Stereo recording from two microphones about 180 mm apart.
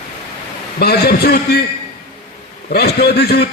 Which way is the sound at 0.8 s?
60° left (ahead or behind).